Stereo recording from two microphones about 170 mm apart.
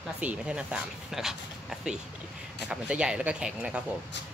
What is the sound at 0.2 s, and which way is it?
Speech, 5° right (ahead or behind).